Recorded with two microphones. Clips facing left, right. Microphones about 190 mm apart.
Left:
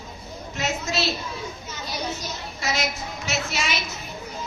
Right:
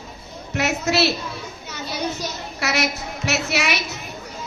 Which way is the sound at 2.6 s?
70° right (ahead or behind).